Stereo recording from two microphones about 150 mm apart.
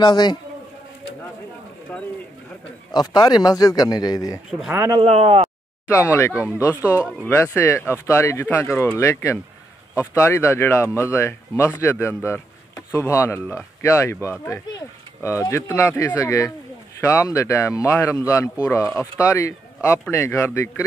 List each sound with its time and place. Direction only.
0.0 s speech: 30° left (ahead or behind)
2.9 s speech: 30° left (ahead or behind)
4.5 s speech: centre (ahead or behind)
4.7 s speech: 20° right (ahead or behind)
5.0 s speech: 45° right (ahead or behind)
5.9 s speech: 20° left (ahead or behind)